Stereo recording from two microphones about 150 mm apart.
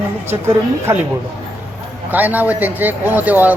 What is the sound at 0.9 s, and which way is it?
Speech, 15° right (ahead or behind).